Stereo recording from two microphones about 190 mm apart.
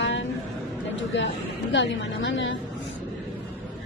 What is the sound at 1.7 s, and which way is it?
Speech, 70° left (ahead or behind).